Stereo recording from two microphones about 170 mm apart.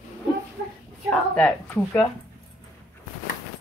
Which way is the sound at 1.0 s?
5° left (ahead or behind).